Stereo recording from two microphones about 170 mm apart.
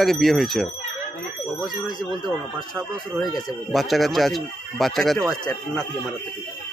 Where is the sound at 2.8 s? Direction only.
Centre (ahead or behind).